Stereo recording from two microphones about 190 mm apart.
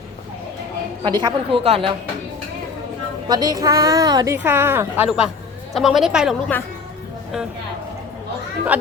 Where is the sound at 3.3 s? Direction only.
20° right (ahead or behind); by 6.5 s centre (ahead or behind).